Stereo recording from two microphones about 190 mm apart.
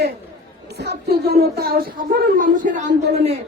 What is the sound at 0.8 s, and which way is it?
Speech, 60° right (ahead or behind).